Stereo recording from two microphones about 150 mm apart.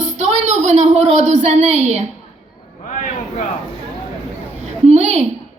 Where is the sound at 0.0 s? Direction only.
50° right (ahead or behind).